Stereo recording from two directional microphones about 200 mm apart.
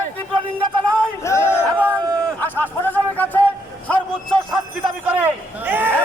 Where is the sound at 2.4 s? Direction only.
10° left (ahead or behind).